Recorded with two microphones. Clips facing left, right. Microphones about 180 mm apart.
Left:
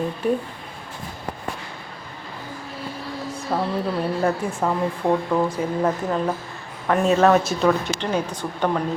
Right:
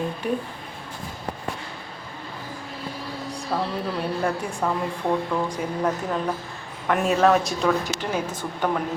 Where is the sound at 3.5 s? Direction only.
15° left (ahead or behind); by 8.0 s centre (ahead or behind).